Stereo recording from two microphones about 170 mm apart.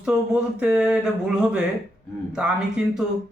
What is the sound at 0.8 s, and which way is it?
Speech, 5° right (ahead or behind).